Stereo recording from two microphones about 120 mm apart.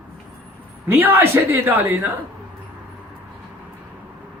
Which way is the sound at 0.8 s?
15° right (ahead or behind).